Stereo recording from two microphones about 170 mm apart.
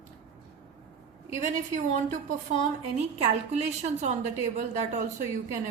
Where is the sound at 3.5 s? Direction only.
40° right (ahead or behind).